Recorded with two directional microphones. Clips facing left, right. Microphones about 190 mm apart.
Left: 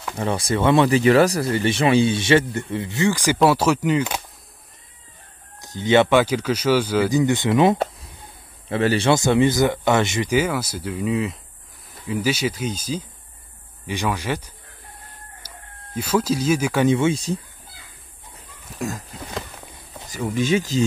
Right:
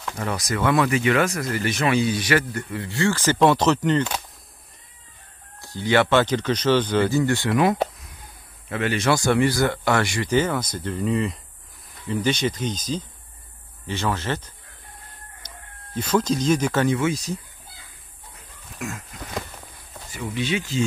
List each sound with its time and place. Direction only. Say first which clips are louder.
0.2 s speech: left 4 dB; 30° left (ahead or behind); by 4.2 s 10° left (ahead or behind)
5.6 s speech: left 3 dB; 20° left (ahead or behind)
10.3 s speech: right 1 dB; 10° left (ahead or behind)
15.4 s chicken: even; 10° left (ahead or behind)
16.0 s speech: left 1 dB; 10° left (ahead or behind)
16.8 s speech: left 4 dB; 25° left (ahead or behind)
18.3 s a sound: left 4 dB; 35° left (ahead or behind)
19.2 s walk: right 1 dB; 15° left (ahead or behind)
20.1 s speech: left 5 dB; 45° left (ahead or behind)